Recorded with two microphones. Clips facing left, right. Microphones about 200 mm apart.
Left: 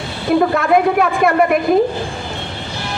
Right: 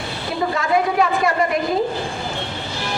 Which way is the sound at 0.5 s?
60° left (ahead or behind).